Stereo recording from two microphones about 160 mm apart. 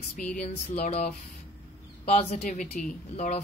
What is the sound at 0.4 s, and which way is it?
Speech, 45° left (ahead or behind).